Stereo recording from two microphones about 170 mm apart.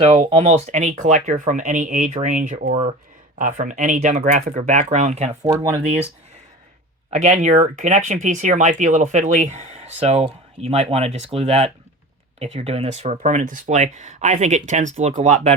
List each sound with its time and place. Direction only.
0.0 s speech: 40° right (ahead or behind)
5.3 s speech: 15° right (ahead or behind)
7.1 s speech: 45° right (ahead or behind)